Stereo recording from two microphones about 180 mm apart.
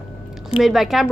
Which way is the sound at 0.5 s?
Centre (ahead or behind).